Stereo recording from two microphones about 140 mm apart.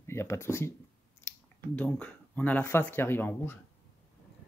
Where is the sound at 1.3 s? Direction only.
20° left (ahead or behind).